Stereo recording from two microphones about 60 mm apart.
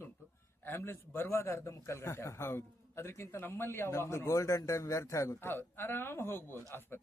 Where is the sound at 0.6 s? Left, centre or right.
Left.